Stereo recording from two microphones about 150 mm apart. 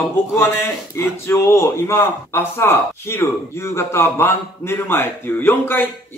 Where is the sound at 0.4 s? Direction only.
15° left (ahead or behind).